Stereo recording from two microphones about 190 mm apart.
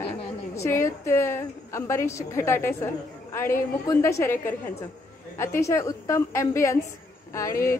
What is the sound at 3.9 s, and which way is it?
Speech, 15° left (ahead or behind).